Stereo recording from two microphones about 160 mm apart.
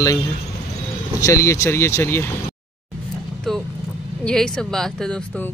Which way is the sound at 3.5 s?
Centre (ahead or behind).